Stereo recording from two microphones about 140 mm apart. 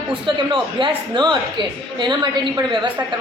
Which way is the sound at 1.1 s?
35° right (ahead or behind).